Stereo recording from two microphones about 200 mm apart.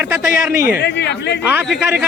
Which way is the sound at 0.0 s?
5° right (ahead or behind).